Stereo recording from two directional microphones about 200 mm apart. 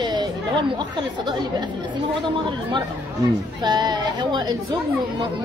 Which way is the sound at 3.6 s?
20° right (ahead or behind).